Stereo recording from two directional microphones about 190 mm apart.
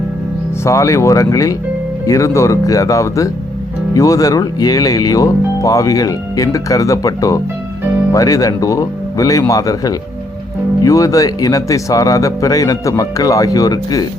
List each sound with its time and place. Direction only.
0.6 s speech: 15° left (ahead or behind)